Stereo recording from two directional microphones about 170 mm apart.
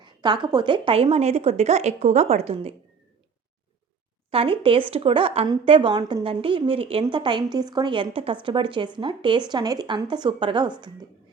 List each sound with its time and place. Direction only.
0.0 s a woman's voice: 25° right (ahead or behind)
4.3 s speech: 30° right (ahead or behind)